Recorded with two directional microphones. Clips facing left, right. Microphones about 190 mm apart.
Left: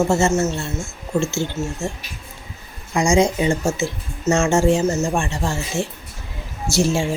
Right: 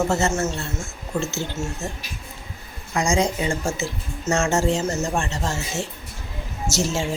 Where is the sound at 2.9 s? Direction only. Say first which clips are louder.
Left 5 dB; 15° left (ahead or behind).